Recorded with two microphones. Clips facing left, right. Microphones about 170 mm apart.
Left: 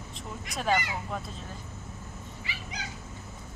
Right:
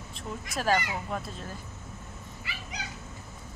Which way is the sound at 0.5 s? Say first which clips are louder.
Right 1 dB; centre (ahead or behind).